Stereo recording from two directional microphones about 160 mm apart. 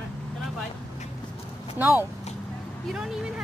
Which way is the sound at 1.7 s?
10° right (ahead or behind).